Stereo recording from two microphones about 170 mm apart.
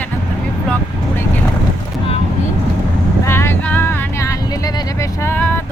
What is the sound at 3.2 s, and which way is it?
Vehicle, 15° left (ahead or behind).